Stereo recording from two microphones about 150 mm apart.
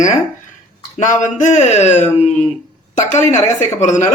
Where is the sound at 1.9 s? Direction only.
15° left (ahead or behind).